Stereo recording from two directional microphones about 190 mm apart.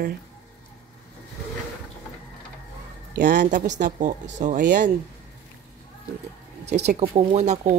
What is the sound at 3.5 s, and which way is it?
Speech, 40° right (ahead or behind).